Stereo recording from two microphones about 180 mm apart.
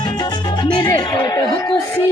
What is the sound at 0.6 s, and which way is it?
Music, 25° left (ahead or behind).